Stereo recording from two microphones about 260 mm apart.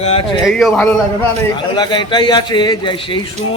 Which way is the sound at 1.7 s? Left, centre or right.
Centre.